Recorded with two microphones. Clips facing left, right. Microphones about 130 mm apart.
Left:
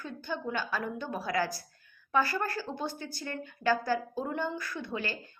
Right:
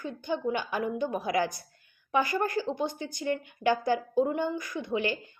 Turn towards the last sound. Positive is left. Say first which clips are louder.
# right 6 dB
turn(degrees=-20)  # may be behind; listen again after turning